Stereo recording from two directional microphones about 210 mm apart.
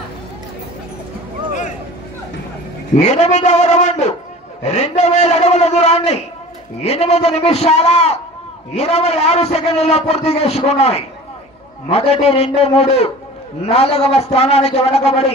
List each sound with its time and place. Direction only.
3.0 s a man's voice: 35° left (ahead or behind)